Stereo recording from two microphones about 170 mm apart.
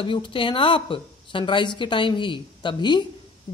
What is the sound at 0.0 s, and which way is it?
Speech, 30° left (ahead or behind).